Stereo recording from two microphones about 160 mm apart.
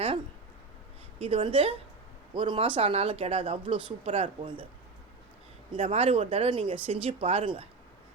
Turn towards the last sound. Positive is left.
turn(degrees=-35)  # may be behind; listen again after turning